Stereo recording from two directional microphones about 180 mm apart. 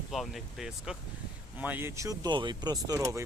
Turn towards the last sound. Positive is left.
turn(degrees=-15)  # may be behind; listen again after turning